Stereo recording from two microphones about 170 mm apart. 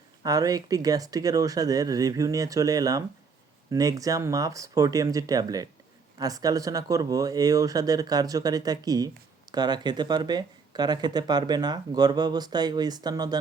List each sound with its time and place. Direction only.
0.2 s speech: 20° right (ahead or behind)